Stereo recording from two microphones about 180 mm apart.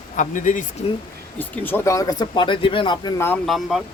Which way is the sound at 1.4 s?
10° left (ahead or behind).